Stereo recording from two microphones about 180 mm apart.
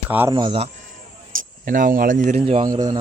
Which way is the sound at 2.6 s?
20° right (ahead or behind).